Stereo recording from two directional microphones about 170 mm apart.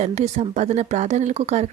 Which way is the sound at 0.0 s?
40° right (ahead or behind).